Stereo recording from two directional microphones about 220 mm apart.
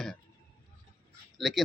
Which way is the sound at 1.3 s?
Centre (ahead or behind).